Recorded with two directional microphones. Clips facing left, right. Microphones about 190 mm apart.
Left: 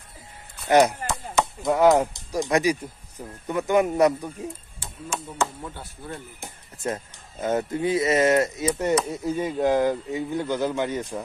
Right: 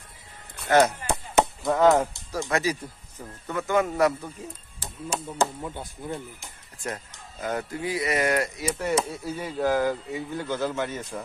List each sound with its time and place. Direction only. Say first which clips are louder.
0.7 s speech: left 2 dB; 15° left (ahead or behind)
4.7 s speech: right 1 dB; 35° right (ahead or behind)
5.6 s speech: right 3 dB; 15° right (ahead or behind)
6.8 s speech: left 5 dB; 25° left (ahead or behind)